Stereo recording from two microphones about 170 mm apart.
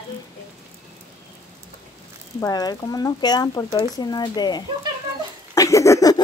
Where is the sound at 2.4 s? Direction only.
20° left (ahead or behind).